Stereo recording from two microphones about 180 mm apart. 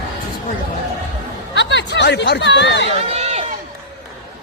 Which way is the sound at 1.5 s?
80° left.